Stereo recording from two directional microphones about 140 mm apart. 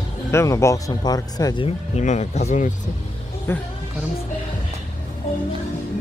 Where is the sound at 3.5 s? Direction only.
20° left (ahead or behind).